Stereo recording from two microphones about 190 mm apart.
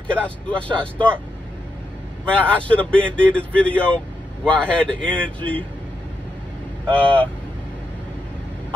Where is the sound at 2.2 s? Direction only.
5° left (ahead or behind).